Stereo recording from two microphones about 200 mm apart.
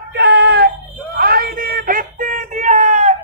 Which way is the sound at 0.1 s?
55° right (ahead or behind).